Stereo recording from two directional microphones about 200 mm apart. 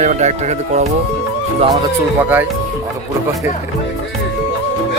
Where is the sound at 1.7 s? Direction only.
20° right (ahead or behind).